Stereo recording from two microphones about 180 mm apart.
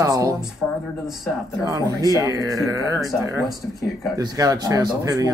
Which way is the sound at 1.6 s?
20° right (ahead or behind).